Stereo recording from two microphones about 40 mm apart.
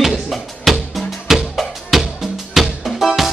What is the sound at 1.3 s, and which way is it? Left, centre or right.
Music, centre.